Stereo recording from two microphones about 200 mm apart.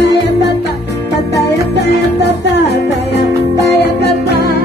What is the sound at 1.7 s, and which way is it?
Music, 60° left (ahead or behind).